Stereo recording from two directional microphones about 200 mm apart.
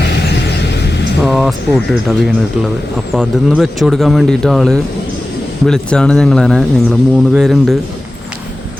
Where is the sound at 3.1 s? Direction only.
Centre (ahead or behind).